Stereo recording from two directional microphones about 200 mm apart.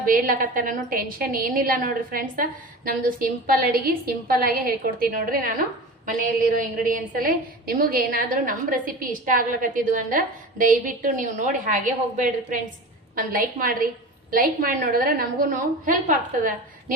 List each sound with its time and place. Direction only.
0.0 s a woman's voice: 45° right (ahead or behind)
6.6 s a woman's voice: 45° right (ahead or behind)